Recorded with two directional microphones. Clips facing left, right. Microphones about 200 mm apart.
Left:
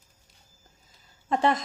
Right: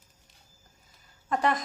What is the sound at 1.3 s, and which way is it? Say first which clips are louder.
Speech: left 3 dB; 25° left (ahead or behind).